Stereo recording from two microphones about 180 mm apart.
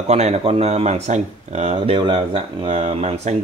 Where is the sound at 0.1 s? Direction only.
35° right (ahead or behind).